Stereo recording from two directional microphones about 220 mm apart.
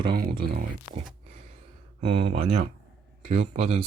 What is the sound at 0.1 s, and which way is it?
Speech, 40° right (ahead or behind).